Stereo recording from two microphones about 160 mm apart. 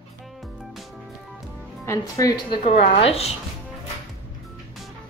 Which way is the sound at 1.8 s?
20° left (ahead or behind).